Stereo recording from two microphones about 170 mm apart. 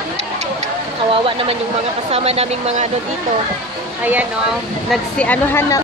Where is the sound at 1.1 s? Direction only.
30° right (ahead or behind).